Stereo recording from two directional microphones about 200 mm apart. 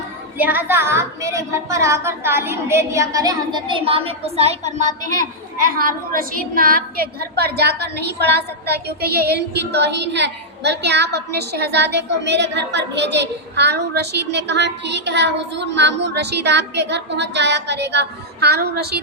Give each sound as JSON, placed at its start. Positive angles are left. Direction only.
{"t": 0.3, "sound": "a woman's voice", "side_deg": -10}